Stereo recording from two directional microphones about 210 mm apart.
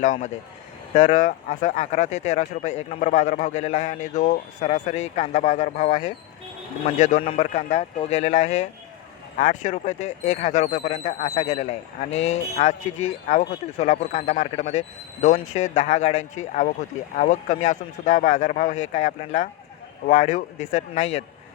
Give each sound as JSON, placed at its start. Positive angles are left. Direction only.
{"t": 0.0, "sound": "speech", "side_deg": 35}
{"t": 13.7, "sound": "speech", "side_deg": 35}